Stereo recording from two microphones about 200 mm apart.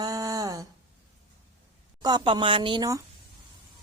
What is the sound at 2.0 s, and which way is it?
Speech, 25° right (ahead or behind).